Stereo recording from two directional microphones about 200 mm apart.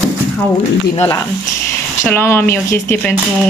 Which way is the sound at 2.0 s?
10° left (ahead or behind).